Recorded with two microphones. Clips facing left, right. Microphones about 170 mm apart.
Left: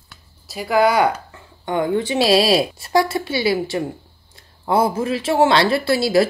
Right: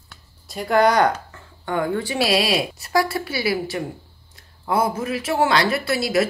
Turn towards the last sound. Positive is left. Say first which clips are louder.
# left 4 dB
turn(degrees=30)  # may be behind; listen again after turning